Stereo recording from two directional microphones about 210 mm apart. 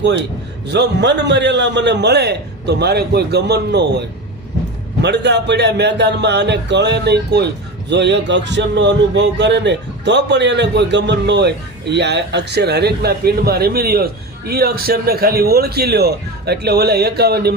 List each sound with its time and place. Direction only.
0.7 s speech: 55° right (ahead or behind)
5.0 s speech: 55° right (ahead or behind)